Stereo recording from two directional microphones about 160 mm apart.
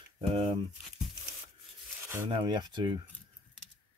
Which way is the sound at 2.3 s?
30° right (ahead or behind).